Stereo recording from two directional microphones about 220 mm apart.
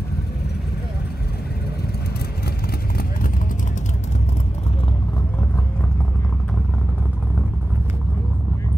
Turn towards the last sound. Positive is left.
turn(degrees=-5)  # may be behind; listen again after turning